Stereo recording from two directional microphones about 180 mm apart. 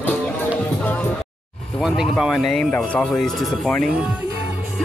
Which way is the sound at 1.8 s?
Centre (ahead or behind).